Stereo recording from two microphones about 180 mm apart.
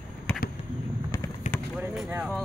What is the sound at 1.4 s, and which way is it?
Basketball bounce, 40° left (ahead or behind).